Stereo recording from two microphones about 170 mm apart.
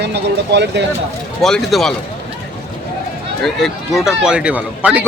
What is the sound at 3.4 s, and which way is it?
A man's voice, centre (ahead or behind).